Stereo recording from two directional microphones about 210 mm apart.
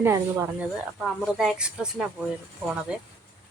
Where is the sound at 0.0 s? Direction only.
10° right (ahead or behind).